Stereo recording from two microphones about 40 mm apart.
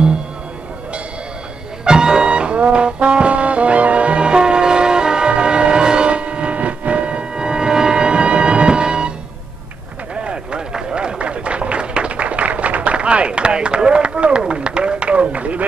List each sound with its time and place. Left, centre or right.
1.9 s brass instrument: centre
10.1 s a sound: right
14.4 s run: right